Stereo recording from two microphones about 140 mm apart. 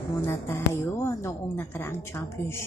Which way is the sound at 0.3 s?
20° left (ahead or behind).